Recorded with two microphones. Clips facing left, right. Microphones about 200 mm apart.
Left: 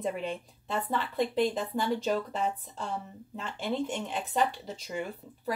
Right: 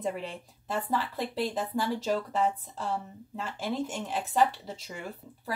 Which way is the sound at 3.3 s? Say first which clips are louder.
Even; centre (ahead or behind).